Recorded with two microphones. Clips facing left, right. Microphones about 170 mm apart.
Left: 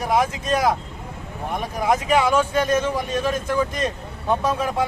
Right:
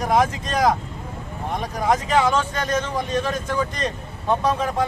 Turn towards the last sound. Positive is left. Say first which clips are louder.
# even
turn(degrees=10)  # may be behind; listen again after turning